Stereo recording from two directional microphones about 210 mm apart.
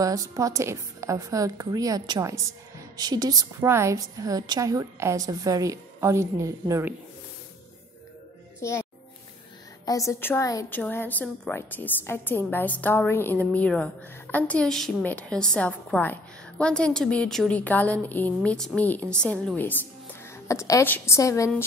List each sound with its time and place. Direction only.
0.0 s a woman's voice: 15° right (ahead or behind)
8.5 s speech: 15° left (ahead or behind)
9.8 s a woman's voice: 15° left (ahead or behind)